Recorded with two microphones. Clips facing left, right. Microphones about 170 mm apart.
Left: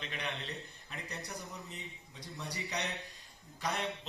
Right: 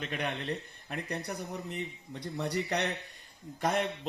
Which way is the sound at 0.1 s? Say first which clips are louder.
Right 7 dB; 50° right (ahead or behind).